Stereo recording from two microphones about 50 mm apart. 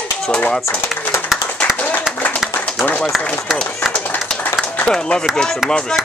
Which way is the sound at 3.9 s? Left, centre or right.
Left.